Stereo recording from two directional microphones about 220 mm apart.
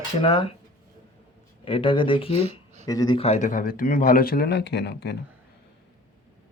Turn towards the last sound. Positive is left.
turn(degrees=50)  # may be behind; listen again after turning